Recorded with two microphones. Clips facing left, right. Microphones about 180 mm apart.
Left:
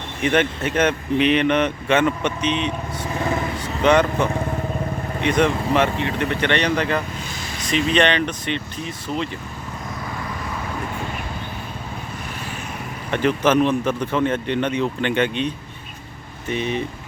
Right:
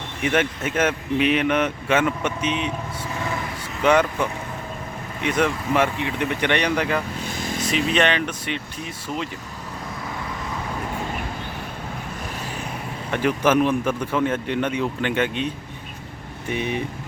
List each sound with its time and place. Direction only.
0.2 s speech: 5° right (ahead or behind)
7.3 s vehicle: 50° right (ahead or behind)
7.9 s speech: 5° right (ahead or behind)
13.1 s speech: 10° right (ahead or behind)
16.5 s speech: 10° right (ahead or behind)